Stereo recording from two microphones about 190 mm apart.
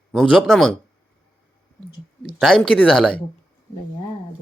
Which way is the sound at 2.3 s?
Centre (ahead or behind).